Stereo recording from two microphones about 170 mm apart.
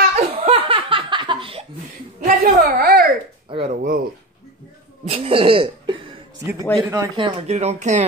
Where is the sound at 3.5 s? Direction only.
35° right (ahead or behind).